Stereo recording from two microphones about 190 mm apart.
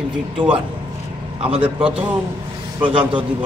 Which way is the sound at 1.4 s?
30° right (ahead or behind).